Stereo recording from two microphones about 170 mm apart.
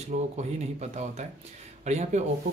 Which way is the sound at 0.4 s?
40° right (ahead or behind).